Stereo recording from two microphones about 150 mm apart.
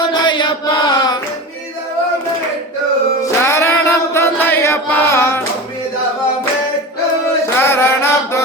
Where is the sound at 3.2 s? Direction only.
20° left (ahead or behind).